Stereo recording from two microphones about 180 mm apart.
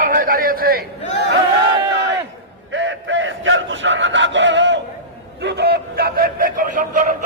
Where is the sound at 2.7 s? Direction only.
90° right.